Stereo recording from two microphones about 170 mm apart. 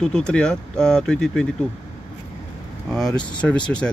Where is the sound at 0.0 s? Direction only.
5° left (ahead or behind).